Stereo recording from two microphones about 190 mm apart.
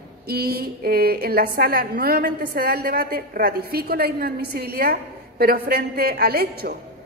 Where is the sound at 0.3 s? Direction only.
55° right (ahead or behind).